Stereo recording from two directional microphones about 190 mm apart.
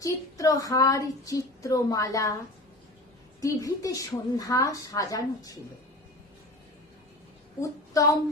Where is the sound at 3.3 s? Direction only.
15° left (ahead or behind).